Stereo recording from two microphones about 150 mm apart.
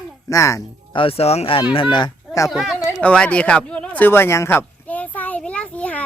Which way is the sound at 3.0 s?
10° left (ahead or behind).